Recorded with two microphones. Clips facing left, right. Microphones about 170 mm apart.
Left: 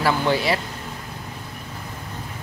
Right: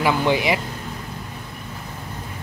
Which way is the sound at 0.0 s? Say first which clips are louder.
Right 1 dB; 15° right (ahead or behind).